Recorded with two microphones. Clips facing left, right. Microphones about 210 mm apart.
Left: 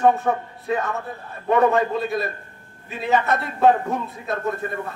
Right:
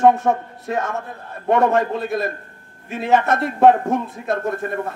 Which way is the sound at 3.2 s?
45° right (ahead or behind).